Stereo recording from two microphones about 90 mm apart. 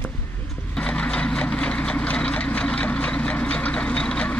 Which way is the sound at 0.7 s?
10° left (ahead or behind).